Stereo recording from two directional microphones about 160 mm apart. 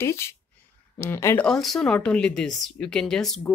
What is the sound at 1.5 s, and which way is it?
Speech, centre (ahead or behind).